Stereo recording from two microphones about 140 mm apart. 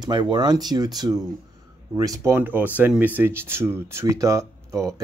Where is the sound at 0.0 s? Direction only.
30° right (ahead or behind).